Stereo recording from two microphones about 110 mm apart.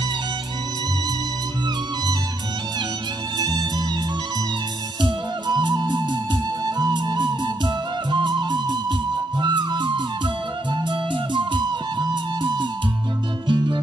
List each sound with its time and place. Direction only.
3.3 s music: 35° right (ahead or behind)
5.0 s music: 45° right (ahead or behind)